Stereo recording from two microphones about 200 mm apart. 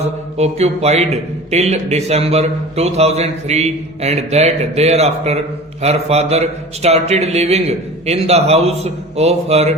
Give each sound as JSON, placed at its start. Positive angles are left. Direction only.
{"t": 0.0, "sound": "a man's voice", "side_deg": -30}